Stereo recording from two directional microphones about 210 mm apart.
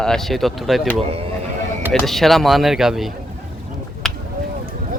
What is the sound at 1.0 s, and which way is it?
Speech, 30° right (ahead or behind).